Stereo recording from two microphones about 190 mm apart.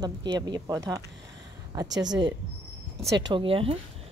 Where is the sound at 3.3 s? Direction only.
25° right (ahead or behind).